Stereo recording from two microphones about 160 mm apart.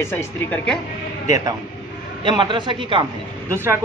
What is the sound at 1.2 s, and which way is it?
A man's voice, 20° right (ahead or behind).